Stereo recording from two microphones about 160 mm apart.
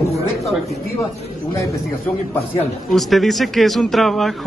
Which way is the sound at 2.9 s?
Centre (ahead or behind).